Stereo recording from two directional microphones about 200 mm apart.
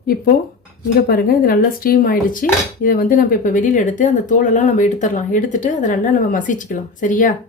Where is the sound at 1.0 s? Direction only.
50° left (ahead or behind).